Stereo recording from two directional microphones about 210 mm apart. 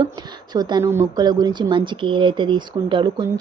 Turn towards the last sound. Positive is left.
turn(degrees=-20)  # may be behind; listen again after turning